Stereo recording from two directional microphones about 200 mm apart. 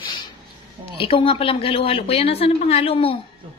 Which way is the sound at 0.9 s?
25° left (ahead or behind).